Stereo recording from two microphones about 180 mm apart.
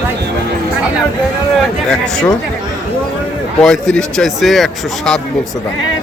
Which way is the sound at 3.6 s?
5° left (ahead or behind).